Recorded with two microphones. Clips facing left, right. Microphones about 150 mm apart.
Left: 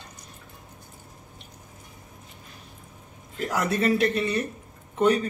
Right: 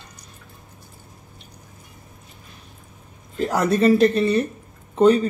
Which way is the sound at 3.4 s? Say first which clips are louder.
Right 7 dB; 35° right (ahead or behind).